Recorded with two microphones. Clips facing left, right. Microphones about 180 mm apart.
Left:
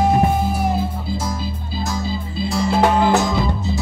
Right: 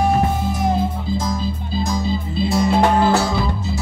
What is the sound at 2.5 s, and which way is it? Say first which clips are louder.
Music: right 2 dB; centre (ahead or behind).